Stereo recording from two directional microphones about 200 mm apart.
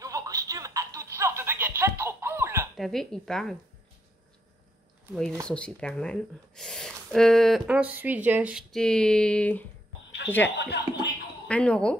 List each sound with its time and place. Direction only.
0.0 s music: 15° right (ahead or behind)
2.7 s speech: centre (ahead or behind)
5.1 s speech: centre (ahead or behind)
10.5 s speech: 55° left (ahead or behind)
11.4 s speech: 5° left (ahead or behind)